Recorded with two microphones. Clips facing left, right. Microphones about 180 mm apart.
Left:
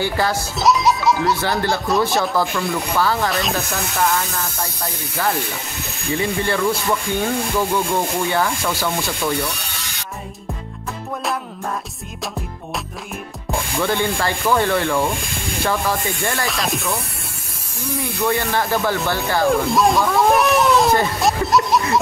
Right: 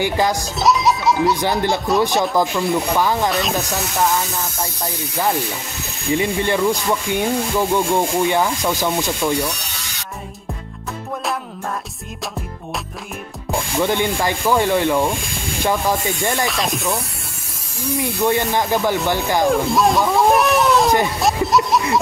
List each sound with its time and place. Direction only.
0.0 s speech: 15° right (ahead or behind)
0.6 s a child's voice: centre (ahead or behind)
1.1 s speech: 20° right (ahead or behind)
3.3 s speech: centre (ahead or behind)
6.1 s speech: 15° right (ahead or behind)
13.5 s speech: 15° right (ahead or behind)
16.4 s speech: centre (ahead or behind)
17.9 s speech: 20° right (ahead or behind)
19.5 s speech: centre (ahead or behind)
20.2 s children playing: centre (ahead or behind)
21.2 s a sound: centre (ahead or behind)